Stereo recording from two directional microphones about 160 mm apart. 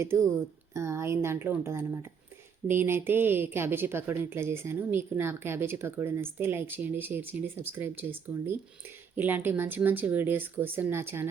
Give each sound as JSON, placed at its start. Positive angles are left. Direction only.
{"t": 0.0, "sound": "a woman's voice", "side_deg": -15}